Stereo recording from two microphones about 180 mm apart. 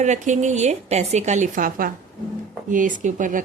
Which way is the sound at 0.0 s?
40° right (ahead or behind).